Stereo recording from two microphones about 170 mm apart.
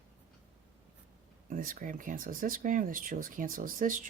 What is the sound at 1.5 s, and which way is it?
Speech, 55° right (ahead or behind).